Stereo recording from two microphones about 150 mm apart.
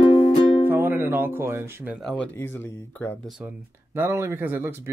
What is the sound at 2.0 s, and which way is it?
Speech, 10° left (ahead or behind).